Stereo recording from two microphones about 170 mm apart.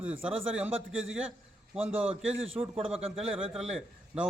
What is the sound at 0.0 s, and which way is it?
A man's voice, 5° right (ahead or behind).